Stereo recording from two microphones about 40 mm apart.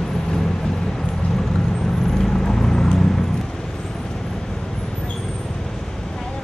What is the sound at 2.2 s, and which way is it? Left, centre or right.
Vehicle, centre.